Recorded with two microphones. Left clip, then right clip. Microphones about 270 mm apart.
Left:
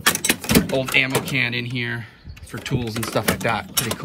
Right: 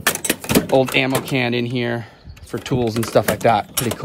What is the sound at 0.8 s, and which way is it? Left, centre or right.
Speech, right.